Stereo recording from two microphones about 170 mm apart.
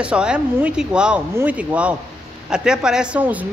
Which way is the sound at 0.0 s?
5° right (ahead or behind).